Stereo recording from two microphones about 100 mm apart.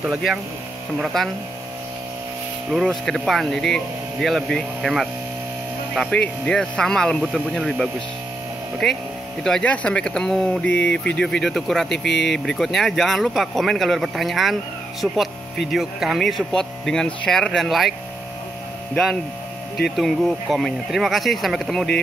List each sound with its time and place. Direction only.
0.0 s speech: 10° right (ahead or behind)
2.7 s speech: 5° left (ahead or behind)
6.1 s speech: 10° left (ahead or behind)
20.0 s speech: centre (ahead or behind)